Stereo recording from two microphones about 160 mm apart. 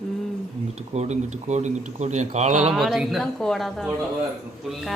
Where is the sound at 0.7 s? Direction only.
40° right (ahead or behind).